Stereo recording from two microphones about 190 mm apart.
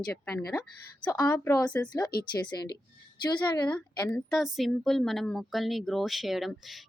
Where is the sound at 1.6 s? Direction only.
5° left (ahead or behind).